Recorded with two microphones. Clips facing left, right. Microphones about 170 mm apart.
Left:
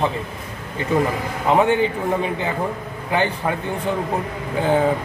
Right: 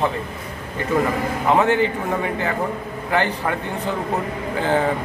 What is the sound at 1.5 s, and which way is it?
Speech, 15° left (ahead or behind).